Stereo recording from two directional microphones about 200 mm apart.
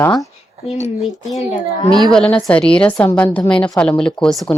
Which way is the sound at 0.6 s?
30° left (ahead or behind).